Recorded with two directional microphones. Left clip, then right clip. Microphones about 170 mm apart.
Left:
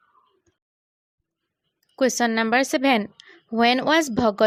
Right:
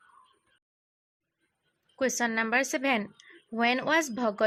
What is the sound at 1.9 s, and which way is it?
A woman's voice, 40° left (ahead or behind).